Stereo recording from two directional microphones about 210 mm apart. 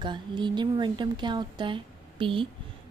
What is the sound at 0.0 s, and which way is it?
A woman's voice, 20° right (ahead or behind).